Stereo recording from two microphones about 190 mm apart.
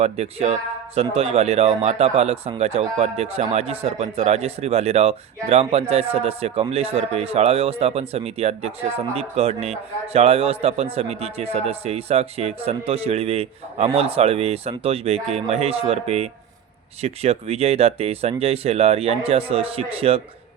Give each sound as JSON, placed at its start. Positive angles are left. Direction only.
{"t": 0.0, "sound": "speech", "side_deg": -35}